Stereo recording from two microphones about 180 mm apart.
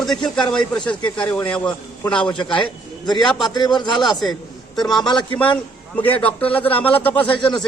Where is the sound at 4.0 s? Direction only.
Centre (ahead or behind).